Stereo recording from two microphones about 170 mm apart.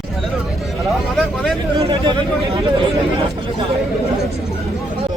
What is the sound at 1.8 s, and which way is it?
Speech, 35° right (ahead or behind).